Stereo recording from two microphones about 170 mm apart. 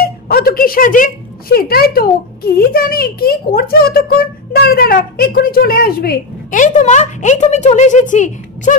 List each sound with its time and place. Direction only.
0.0 s a woman's voice: 60° left (ahead or behind)